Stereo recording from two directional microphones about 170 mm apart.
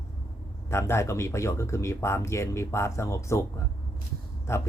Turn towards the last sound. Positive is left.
turn(degrees=15)  # may be behind; listen again after turning